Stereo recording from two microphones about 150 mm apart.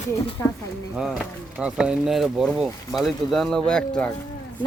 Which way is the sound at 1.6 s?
5° right (ahead or behind).